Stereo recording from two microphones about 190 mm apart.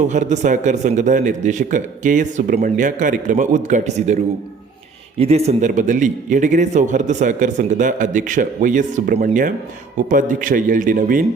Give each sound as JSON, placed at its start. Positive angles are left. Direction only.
{"t": 0.1, "sound": "a man's voice", "side_deg": -40}
{"t": 5.2, "sound": "a man's voice", "side_deg": -35}